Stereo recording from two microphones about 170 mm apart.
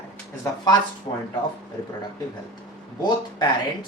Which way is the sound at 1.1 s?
20° left (ahead or behind).